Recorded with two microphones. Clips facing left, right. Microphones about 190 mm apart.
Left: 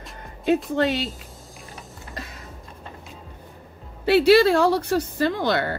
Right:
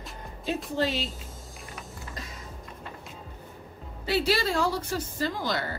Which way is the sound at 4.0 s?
65° left (ahead or behind).